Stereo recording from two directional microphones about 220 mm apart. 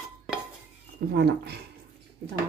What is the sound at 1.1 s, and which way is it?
Speech, 45° right (ahead or behind).